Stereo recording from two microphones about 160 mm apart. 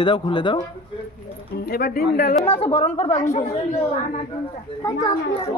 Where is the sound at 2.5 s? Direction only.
35° left (ahead or behind).